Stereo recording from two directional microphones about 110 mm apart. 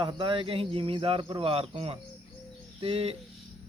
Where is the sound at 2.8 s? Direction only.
60° right (ahead or behind).